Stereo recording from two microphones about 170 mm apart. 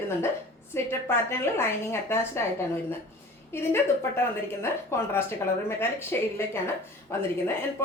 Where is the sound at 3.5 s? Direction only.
15° left (ahead or behind).